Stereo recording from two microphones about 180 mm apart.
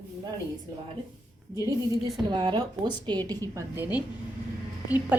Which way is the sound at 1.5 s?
20° right (ahead or behind).